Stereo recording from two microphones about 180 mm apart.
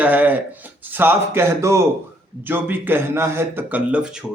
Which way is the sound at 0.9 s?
10° right (ahead or behind).